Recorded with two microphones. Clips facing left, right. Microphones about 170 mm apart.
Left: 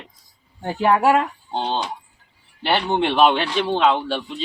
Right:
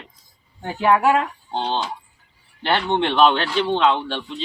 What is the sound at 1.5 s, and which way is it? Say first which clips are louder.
Speech: right 1 dB; 10° left (ahead or behind).